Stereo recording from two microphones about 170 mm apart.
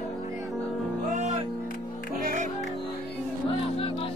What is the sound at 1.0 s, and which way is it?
Music, 45° right (ahead or behind).